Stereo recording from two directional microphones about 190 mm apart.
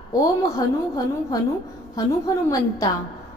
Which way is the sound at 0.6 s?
20° left (ahead or behind).